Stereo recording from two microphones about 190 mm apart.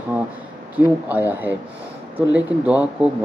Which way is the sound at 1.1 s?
10° right (ahead or behind).